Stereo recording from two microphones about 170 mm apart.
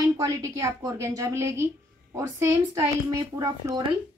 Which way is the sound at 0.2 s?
20° right (ahead or behind).